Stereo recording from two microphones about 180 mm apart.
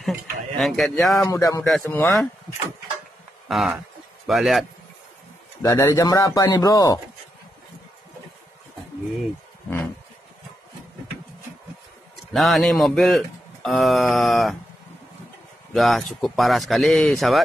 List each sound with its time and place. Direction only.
0.0 s speech: centre (ahead or behind)
1.2 s speech: 15° left (ahead or behind)
1.9 s speech: 5° left (ahead or behind)
3.4 s speech: centre (ahead or behind)
5.6 s speech: 20° left (ahead or behind)
12.3 s speech: centre (ahead or behind)
15.7 s speech: centre (ahead or behind)